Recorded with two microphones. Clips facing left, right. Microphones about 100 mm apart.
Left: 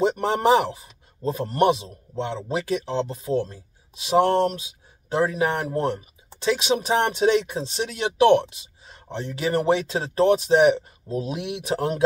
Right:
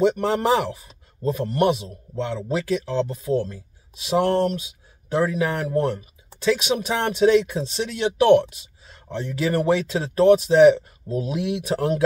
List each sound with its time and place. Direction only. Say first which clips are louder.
0.0 s a man's voice: right 1 dB; 25° left (ahead or behind)